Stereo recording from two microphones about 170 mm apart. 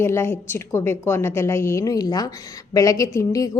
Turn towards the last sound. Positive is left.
turn(degrees=20)  # may be behind; listen again after turning